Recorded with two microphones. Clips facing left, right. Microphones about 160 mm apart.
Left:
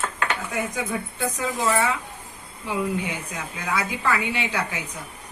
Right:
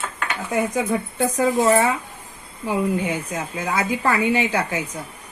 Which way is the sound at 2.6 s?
45° right (ahead or behind).